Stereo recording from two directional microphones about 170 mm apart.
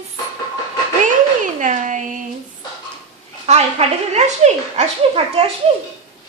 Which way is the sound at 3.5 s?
40° right (ahead or behind).